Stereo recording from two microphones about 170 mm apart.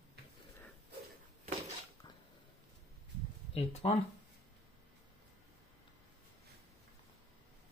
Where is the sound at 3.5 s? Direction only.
35° left (ahead or behind).